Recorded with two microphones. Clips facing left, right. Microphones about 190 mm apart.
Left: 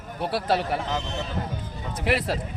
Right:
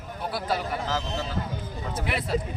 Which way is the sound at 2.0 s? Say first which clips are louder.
Left 4 dB; 85° left.